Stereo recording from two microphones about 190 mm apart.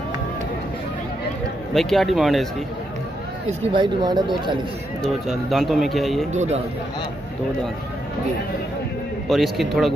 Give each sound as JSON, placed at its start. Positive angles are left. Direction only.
{"t": 1.7, "sound": "speech", "side_deg": 0}
{"t": 3.7, "sound": "speech", "side_deg": -20}
{"t": 5.0, "sound": "speech", "side_deg": 0}
{"t": 6.3, "sound": "speech", "side_deg": -35}
{"t": 9.3, "sound": "speech", "side_deg": 0}